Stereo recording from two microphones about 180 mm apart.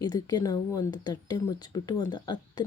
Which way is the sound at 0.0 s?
20° left (ahead or behind).